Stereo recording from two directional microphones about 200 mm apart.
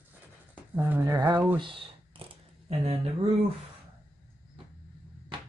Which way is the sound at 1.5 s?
25° right (ahead or behind).